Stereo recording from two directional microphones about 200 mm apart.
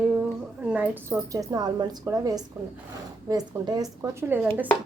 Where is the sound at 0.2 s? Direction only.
5° right (ahead or behind).